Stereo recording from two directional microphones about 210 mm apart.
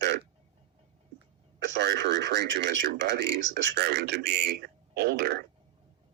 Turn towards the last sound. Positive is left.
turn(degrees=-50)  # may be behind; listen again after turning